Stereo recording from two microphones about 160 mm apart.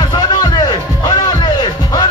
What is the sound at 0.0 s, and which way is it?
Music, 25° left (ahead or behind).